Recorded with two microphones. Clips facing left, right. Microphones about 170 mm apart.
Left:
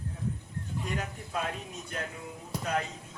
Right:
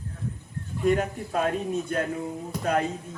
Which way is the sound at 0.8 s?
45° right (ahead or behind).